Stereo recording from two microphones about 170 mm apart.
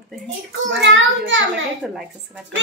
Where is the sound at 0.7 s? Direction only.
90° right.